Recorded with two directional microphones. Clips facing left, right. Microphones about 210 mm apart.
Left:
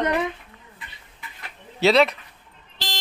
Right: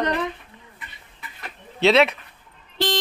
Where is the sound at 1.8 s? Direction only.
Centre (ahead or behind).